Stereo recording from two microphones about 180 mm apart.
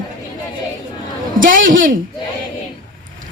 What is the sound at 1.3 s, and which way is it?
Speech, 45° right (ahead or behind).